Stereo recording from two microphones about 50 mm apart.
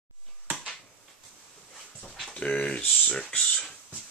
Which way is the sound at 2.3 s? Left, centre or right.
Left.